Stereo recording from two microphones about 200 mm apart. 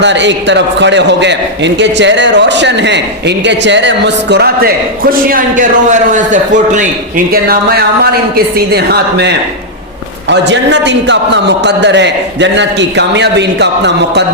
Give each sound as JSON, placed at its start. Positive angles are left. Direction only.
{"t": 0.0, "sound": "a man's voice", "side_deg": -65}
{"t": 7.3, "sound": "a woman's voice", "side_deg": -50}